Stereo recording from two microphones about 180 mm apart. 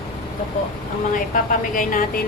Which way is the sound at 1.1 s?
50° left (ahead or behind).